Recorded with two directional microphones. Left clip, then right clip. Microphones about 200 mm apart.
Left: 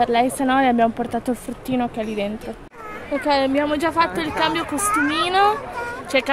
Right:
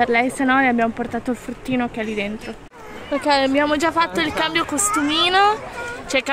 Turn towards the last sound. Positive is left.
turn(degrees=-5)  # may be behind; listen again after turning